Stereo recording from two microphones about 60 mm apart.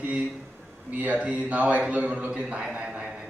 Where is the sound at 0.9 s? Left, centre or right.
Right.